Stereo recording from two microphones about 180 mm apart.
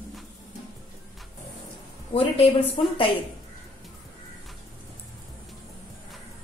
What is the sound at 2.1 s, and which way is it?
Speech, 30° left (ahead or behind).